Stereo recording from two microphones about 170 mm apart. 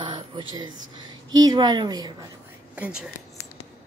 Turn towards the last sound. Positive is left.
turn(degrees=-5)  # may be behind; listen again after turning